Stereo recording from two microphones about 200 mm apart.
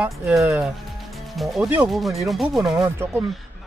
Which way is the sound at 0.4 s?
15° right (ahead or behind).